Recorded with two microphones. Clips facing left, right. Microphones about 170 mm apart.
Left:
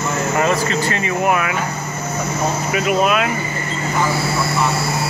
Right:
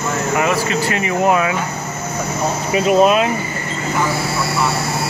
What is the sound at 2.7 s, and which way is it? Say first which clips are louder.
Speech: right 5 dB; 35° right (ahead or behind).